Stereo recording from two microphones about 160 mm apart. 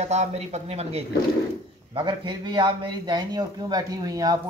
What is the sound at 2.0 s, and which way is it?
A man's voice, 30° right (ahead or behind).